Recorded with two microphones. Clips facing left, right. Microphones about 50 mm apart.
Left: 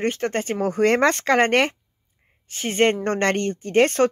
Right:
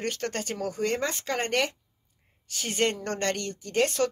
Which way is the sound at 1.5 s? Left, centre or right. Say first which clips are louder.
Left 8 dB; left.